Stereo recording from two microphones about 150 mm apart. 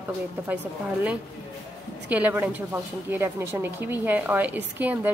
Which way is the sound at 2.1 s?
10° right (ahead or behind).